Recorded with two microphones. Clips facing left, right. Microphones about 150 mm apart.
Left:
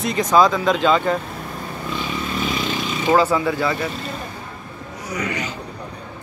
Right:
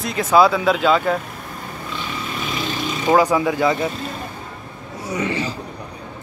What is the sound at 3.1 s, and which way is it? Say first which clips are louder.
Speech: right 1 dB; 15° right (ahead or behind).